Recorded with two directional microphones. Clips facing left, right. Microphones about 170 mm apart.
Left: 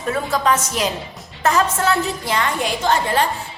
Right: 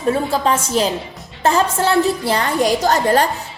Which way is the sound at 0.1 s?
30° right (ahead or behind).